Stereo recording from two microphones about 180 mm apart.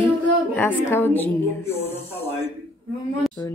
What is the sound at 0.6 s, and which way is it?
Speech, 10° left (ahead or behind).